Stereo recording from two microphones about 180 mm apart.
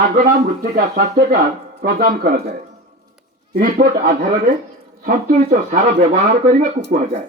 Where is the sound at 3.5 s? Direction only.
50° right (ahead or behind).